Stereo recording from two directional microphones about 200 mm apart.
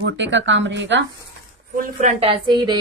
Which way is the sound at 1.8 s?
35° right (ahead or behind).